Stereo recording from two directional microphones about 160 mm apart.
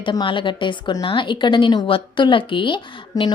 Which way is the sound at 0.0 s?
30° left (ahead or behind).